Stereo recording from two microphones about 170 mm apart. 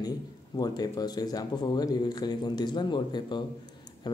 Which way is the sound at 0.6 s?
25° left (ahead or behind).